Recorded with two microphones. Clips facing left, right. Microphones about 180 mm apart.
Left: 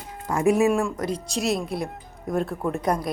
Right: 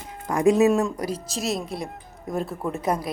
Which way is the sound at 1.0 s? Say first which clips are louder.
Left 2 dB; 5° right (ahead or behind).